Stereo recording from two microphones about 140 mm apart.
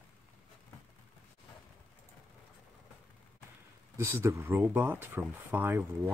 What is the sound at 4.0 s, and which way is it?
Speech, 20° right (ahead or behind).